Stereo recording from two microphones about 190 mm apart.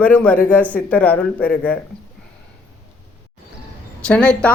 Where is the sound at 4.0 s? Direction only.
5° left (ahead or behind).